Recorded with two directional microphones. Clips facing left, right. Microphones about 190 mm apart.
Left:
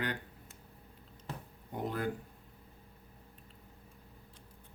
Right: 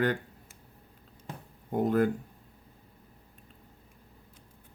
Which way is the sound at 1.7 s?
50° right (ahead or behind).